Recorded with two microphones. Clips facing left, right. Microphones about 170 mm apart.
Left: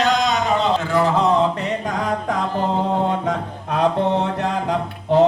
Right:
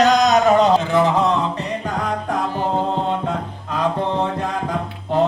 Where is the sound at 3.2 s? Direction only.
65° left (ahead or behind).